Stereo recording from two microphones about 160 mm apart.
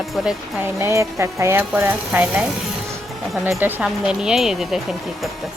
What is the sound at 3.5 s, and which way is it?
A woman's voice, 15° right (ahead or behind).